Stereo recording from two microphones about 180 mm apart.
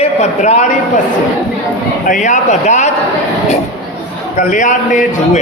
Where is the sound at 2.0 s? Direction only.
45° left (ahead or behind).